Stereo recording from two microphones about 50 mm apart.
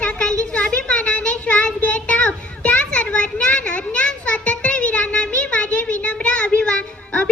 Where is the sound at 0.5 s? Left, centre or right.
Left.